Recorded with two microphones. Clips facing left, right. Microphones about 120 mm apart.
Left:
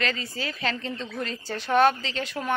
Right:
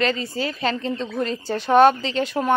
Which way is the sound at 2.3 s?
35° right (ahead or behind).